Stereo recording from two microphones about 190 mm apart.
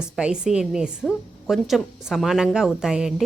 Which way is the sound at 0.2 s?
5° right (ahead or behind).